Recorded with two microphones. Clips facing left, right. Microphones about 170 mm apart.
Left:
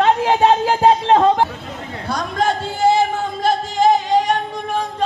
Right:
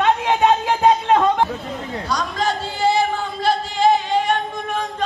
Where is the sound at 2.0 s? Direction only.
55° left (ahead or behind).